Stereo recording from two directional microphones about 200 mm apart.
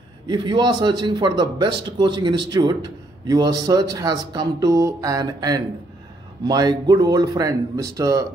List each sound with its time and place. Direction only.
0.3 s a man's voice: 25° right (ahead or behind)